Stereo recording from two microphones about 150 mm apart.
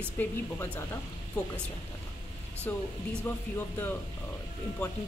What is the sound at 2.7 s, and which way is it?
Speech, 15° left (ahead or behind).